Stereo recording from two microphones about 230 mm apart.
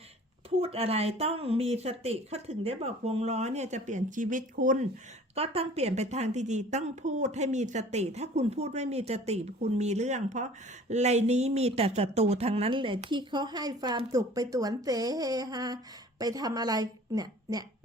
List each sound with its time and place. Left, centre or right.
0.6 s a woman's voice: right